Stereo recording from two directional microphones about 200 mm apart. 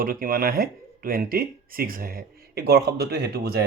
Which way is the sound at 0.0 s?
45° right (ahead or behind).